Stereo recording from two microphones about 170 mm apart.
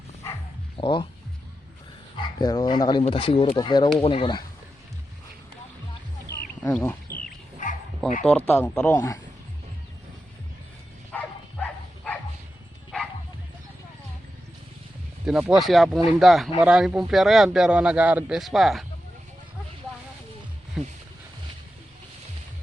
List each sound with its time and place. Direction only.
0.8 s speech: 30° left (ahead or behind)
2.1 s speech: 25° left (ahead or behind)
6.6 s speech: 10° left (ahead or behind)
8.0 s a man's voice: centre (ahead or behind)
11.1 s dog: 5° left (ahead or behind)
15.3 s a man's voice: 5° right (ahead or behind)
20.8 s speech: 5° right (ahead or behind)